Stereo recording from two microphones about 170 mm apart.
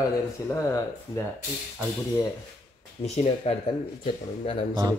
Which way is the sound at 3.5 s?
40° left (ahead or behind).